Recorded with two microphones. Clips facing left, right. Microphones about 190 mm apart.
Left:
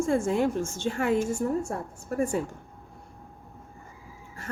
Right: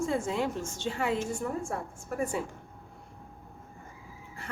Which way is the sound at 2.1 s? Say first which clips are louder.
Left 5 dB; 40° left (ahead or behind).